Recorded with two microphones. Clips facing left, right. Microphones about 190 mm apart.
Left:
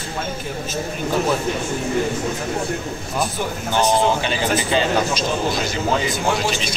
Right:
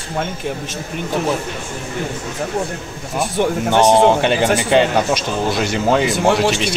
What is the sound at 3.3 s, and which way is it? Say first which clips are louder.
Speech: right 7 dB; 70° right (ahead or behind).